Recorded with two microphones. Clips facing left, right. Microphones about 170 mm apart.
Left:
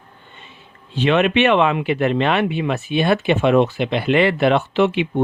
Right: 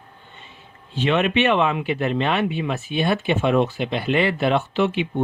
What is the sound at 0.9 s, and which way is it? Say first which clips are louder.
Speech: left 4 dB; 70° left (ahead or behind).